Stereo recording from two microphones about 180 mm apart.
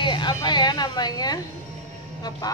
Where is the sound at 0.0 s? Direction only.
25° left (ahead or behind).